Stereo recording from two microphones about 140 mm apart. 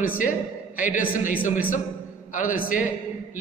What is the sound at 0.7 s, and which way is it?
Speech, 75° left (ahead or behind).